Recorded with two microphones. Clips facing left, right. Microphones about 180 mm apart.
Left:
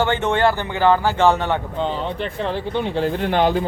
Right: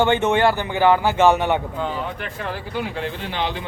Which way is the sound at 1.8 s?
25° left (ahead or behind).